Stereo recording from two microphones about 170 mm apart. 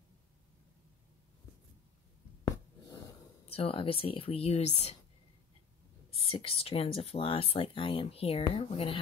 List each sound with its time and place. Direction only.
3.4 s speech: 35° left (ahead or behind)
6.1 s speech: 35° left (ahead or behind)